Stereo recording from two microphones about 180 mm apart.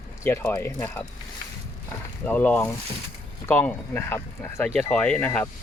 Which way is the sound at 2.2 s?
10° left (ahead or behind).